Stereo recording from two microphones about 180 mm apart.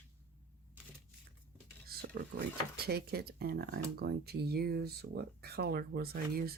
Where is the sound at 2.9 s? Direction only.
60° right (ahead or behind).